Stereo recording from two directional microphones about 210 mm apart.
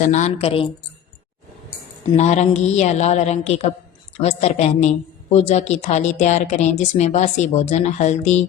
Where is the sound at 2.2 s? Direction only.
30° left (ahead or behind).